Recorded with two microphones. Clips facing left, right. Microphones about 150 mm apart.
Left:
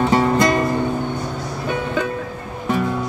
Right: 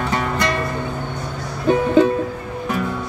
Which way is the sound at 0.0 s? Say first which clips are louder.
Left 6 dB; 30° left (ahead or behind).